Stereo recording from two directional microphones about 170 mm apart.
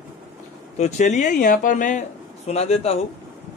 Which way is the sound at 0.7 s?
40° left (ahead or behind).